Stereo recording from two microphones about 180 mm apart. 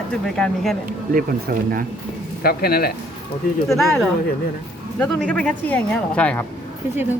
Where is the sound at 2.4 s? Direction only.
60° left (ahead or behind).